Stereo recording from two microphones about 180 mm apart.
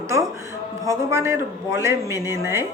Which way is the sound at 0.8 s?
15° right (ahead or behind).